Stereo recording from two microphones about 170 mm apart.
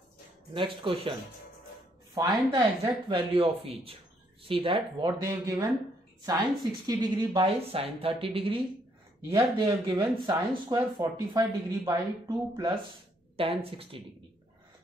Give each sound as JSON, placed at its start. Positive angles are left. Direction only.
{"t": 0.5, "sound": "a woman's voice", "side_deg": -30}
{"t": 2.1, "sound": "a woman's voice", "side_deg": -25}
{"t": 5.2, "sound": "a woman's voice", "side_deg": -20}
{"t": 13.4, "sound": "a woman's voice", "side_deg": -35}